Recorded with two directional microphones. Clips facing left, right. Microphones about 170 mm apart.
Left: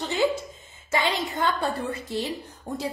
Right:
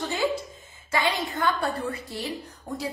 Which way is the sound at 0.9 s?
20° left (ahead or behind).